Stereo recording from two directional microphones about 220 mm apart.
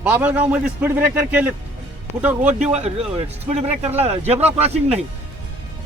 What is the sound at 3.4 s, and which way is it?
Speech, 30° right (ahead or behind).